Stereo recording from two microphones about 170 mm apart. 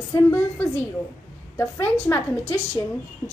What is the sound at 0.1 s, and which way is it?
A woman's voice, 15° left (ahead or behind).